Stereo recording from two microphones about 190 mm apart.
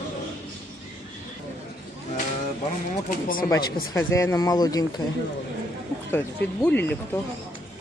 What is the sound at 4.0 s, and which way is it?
Speech, 15° left (ahead or behind).